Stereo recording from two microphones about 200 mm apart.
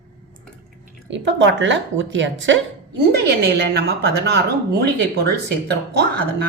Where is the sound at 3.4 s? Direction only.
55° right (ahead or behind).